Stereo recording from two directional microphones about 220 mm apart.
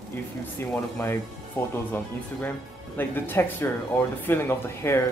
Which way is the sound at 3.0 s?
10° left (ahead or behind).